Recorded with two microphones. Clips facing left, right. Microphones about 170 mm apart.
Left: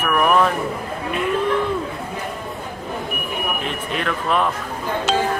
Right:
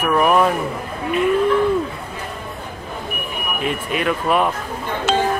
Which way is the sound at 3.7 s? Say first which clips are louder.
Right 3 dB; 10° right (ahead or behind).